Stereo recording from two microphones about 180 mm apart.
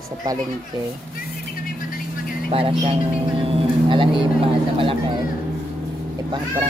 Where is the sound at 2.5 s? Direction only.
30° right (ahead or behind).